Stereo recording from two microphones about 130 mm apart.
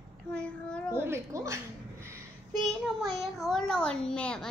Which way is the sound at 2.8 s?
Centre (ahead or behind).